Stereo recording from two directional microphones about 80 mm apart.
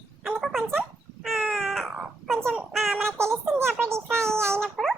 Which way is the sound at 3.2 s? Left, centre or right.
Right.